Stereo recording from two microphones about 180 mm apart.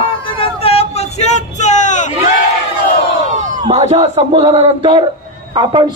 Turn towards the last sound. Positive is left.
turn(degrees=-25)  # may be behind; listen again after turning